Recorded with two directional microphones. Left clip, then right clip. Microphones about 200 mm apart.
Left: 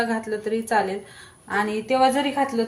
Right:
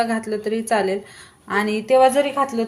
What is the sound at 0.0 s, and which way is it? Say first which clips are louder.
A woman's voice: right 3 dB; 40° right (ahead or behind).